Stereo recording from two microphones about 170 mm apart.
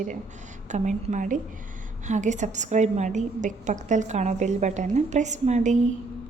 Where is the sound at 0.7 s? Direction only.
45° right (ahead or behind).